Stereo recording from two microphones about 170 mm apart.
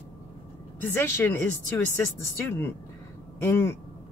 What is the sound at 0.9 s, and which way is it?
Speech, 15° left (ahead or behind).